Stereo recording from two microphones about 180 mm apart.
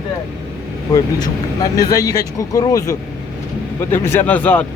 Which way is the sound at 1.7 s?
20° left (ahead or behind).